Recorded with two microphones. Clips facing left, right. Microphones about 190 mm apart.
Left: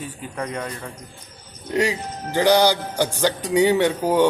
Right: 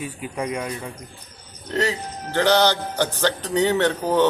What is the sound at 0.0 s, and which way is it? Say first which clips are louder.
Speech: right 2 dB; 10° right (ahead or behind).